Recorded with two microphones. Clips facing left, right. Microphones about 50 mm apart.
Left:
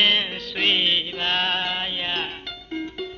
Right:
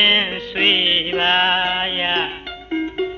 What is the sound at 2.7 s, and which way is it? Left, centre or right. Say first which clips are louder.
Music: right 9 dB; right.